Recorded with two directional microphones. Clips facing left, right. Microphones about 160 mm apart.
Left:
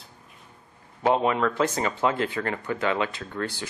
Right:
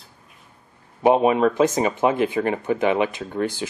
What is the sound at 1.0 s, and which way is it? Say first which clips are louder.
Speech: right 6 dB; 20° right (ahead or behind).